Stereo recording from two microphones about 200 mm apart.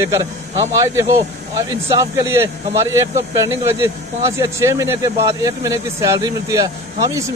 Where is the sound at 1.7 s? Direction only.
15° right (ahead or behind).